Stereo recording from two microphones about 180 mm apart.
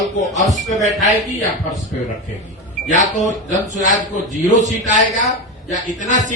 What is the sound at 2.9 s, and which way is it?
Speech, 40° left (ahead or behind).